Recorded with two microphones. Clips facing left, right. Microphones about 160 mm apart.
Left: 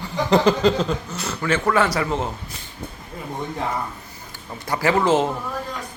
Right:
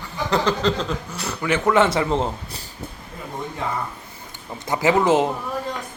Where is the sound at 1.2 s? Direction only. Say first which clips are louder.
Right 1 dB; 15° right (ahead or behind); by 2.6 s 30° right (ahead or behind).